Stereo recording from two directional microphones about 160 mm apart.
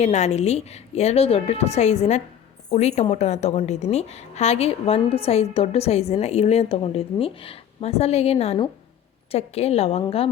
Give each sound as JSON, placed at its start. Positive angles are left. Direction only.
{"t": 0.0, "sound": "a woman's voice", "side_deg": 45}